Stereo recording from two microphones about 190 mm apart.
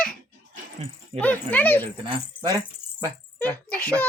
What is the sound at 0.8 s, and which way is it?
Speech, 30° right (ahead or behind).